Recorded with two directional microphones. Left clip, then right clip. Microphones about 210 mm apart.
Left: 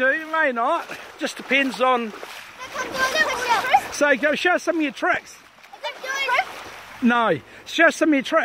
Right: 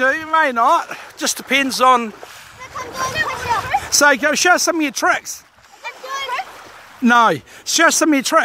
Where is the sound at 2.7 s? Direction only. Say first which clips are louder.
Even; 5° left (ahead or behind).